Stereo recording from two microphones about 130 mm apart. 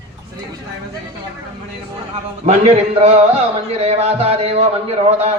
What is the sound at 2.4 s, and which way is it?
A man's voice, 55° right (ahead or behind).